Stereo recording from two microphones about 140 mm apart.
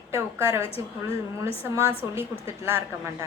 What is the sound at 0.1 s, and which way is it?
Speech, 20° right (ahead or behind).